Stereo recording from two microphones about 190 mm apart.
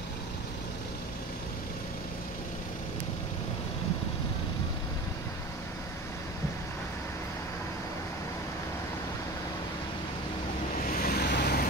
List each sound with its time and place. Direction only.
10.9 s vehicle: 50° left (ahead or behind)